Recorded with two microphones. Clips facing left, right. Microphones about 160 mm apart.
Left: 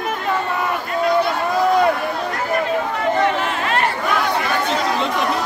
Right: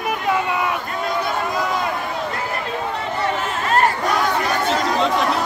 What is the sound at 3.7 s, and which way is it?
Chatter, 40° right (ahead or behind).